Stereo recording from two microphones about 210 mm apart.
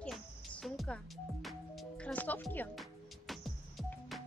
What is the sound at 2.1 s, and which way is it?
Speech, 10° left (ahead or behind).